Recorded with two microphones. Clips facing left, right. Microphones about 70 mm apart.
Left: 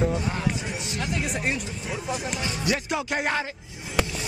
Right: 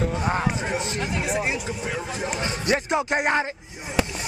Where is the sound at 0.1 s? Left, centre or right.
Right.